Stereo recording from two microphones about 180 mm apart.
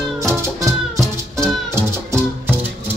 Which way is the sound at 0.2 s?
15° right (ahead or behind).